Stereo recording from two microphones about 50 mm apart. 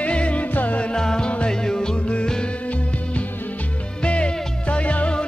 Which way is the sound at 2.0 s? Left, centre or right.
Left.